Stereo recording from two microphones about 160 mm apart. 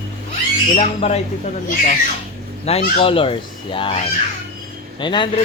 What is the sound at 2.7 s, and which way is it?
Speech, 40° left (ahead or behind).